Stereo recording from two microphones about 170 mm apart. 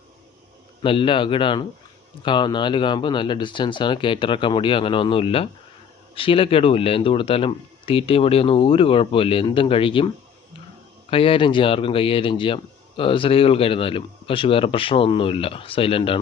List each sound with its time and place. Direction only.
0.8 s speech: 30° left (ahead or behind)
11.1 s speech: 30° left (ahead or behind)